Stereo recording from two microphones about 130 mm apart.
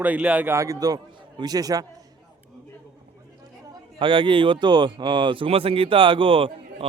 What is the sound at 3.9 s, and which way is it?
A man's voice, 40° right (ahead or behind).